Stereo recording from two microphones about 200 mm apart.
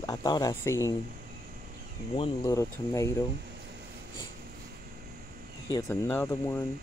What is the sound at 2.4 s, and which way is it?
Speech, 15° left (ahead or behind).